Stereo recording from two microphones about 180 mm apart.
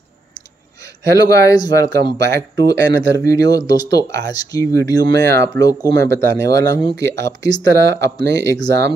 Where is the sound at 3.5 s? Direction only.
20° left (ahead or behind).